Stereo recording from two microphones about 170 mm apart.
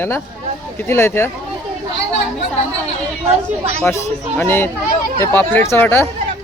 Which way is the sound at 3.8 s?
10° left (ahead or behind).